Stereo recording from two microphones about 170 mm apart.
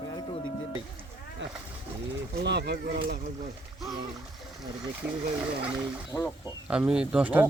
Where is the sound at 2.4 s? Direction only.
80° right.